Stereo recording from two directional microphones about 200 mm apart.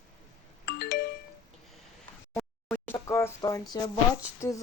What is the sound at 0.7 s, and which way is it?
Music, 55° left (ahead or behind).